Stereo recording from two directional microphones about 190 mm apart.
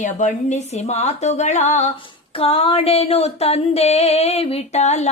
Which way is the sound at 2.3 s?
30° left (ahead or behind).